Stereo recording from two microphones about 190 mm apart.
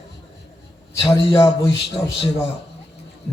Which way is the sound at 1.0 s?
25° left (ahead or behind).